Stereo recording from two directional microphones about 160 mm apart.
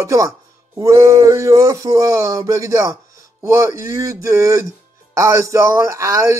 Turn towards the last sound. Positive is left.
turn(degrees=-20)  # may be behind; listen again after turning